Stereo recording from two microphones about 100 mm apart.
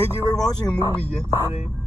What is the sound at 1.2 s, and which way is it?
Speech, 20° right (ahead or behind).